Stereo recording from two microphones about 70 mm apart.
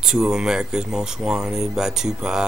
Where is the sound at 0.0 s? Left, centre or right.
Centre.